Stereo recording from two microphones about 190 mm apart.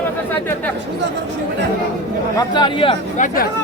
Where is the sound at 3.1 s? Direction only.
45° left (ahead or behind).